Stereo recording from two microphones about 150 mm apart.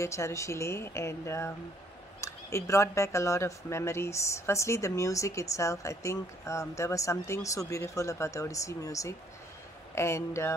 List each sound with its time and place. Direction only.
0.0 s speech: 20° left (ahead or behind)